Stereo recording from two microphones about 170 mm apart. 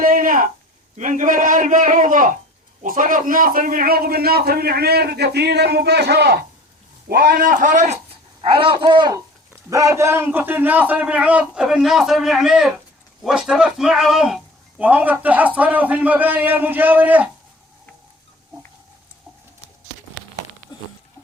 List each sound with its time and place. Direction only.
0.0 s a sound: 55° right (ahead or behind)
0.9 s a man's voice: 50° right (ahead or behind); by 6.4 s 75° right (ahead or behind)
7.1 s a man's voice: 60° right (ahead or behind)
8.4 s a child's voice: 35° right (ahead or behind); by 17.2 s 10° right (ahead or behind)